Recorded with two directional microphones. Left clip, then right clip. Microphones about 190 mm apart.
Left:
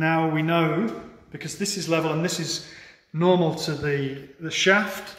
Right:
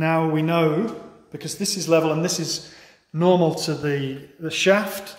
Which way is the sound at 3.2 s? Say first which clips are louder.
Right 3 dB; 25° right (ahead or behind).